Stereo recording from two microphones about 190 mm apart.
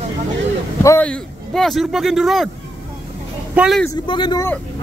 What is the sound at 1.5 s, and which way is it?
Speech, centre (ahead or behind).